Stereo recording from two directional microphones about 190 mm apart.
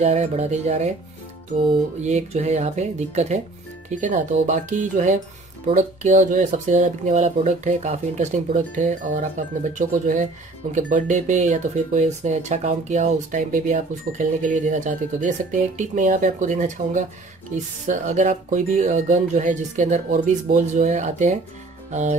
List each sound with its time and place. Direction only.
0.0 s speech: 35° right (ahead or behind)